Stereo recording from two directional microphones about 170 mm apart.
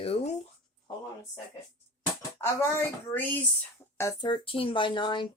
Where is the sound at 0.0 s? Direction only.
35° left (ahead or behind).